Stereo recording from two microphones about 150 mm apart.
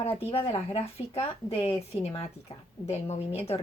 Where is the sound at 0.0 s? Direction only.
40° left (ahead or behind).